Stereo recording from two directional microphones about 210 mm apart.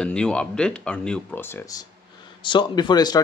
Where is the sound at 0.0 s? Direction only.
5° left (ahead or behind).